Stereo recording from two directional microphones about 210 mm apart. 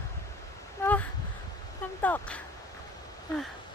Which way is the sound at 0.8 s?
5° left (ahead or behind).